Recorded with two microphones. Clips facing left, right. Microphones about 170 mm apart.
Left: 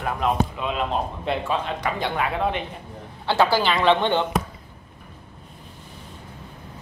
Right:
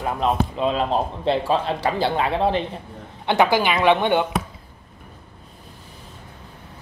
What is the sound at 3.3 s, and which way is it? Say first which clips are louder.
A woman's voice: right 2 dB; 15° right (ahead or behind).